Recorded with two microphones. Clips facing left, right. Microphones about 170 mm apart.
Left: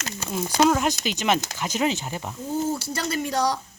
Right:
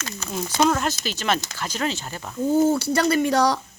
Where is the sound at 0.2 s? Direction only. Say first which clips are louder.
Left 1 dB; 10° left (ahead or behind).